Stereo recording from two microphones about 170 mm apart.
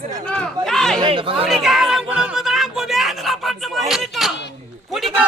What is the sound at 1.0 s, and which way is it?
Speech, 30° right (ahead or behind).